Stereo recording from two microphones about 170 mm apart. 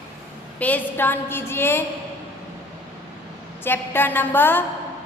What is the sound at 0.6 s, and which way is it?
A woman's voice, 10° left (ahead or behind).